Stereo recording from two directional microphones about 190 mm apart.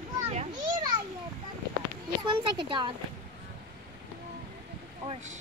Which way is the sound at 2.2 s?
25° right (ahead or behind).